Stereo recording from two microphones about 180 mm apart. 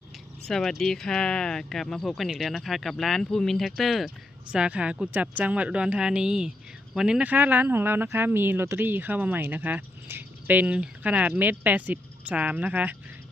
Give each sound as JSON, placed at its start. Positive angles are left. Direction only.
{"t": 0.4, "sound": "speech", "side_deg": 0}